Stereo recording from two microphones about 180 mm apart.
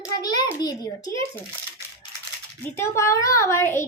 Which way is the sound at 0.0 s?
20° left (ahead or behind).